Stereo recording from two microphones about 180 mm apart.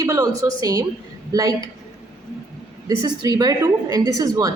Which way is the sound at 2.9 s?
20° right (ahead or behind).